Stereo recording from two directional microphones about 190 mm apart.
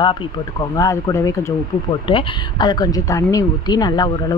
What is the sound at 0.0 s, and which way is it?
Speech, 25° left (ahead or behind).